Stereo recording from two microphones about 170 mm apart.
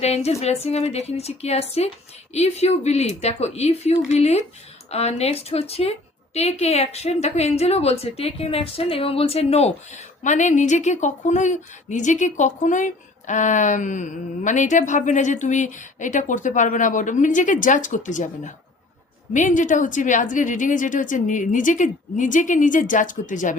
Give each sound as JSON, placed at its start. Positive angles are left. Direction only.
{"t": 0.0, "sound": "a woman's voice", "side_deg": 40}